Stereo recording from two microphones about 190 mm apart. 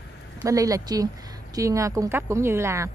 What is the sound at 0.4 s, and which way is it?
Speech, 20° right (ahead or behind).